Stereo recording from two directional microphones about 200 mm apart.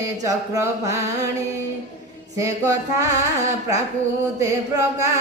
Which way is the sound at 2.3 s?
15° right (ahead or behind).